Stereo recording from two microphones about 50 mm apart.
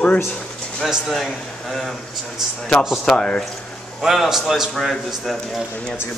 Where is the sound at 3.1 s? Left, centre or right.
Centre.